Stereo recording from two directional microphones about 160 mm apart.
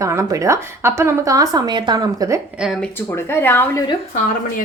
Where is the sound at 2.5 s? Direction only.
Centre (ahead or behind).